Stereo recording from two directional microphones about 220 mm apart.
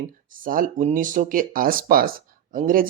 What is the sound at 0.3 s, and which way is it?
Speech, 40° right (ahead or behind).